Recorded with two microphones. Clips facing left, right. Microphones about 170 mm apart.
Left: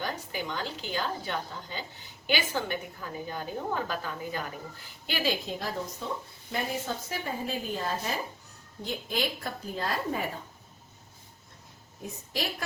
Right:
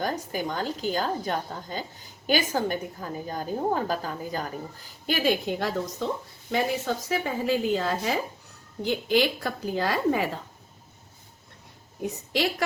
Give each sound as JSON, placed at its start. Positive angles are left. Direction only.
{"t": 0.0, "sound": "a woman's voice", "side_deg": -45}
{"t": 6.5, "sound": "a woman's voice", "side_deg": -90}
{"t": 12.0, "sound": "a woman's voice", "side_deg": -75}